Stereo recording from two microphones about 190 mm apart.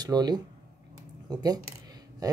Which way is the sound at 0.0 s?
20° right (ahead or behind).